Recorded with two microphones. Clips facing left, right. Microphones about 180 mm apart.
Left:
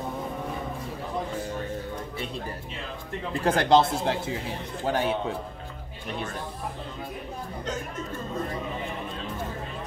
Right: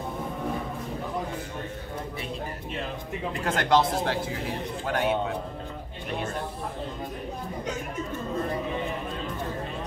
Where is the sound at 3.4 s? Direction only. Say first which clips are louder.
Left 3 dB; 30° left (ahead or behind).